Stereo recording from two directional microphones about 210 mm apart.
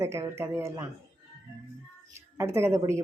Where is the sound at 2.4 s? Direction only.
15° right (ahead or behind).